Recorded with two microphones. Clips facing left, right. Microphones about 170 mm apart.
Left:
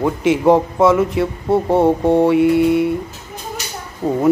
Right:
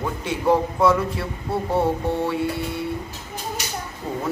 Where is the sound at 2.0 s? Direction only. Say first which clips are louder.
Left 11 dB; 70° left (ahead or behind).